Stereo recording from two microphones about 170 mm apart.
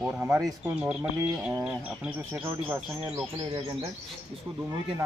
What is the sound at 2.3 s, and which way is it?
Speech, 10° right (ahead or behind).